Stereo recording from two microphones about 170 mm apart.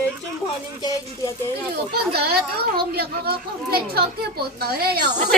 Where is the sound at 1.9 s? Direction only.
70° right (ahead or behind).